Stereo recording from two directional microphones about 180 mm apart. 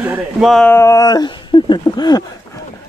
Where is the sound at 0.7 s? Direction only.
20° left (ahead or behind).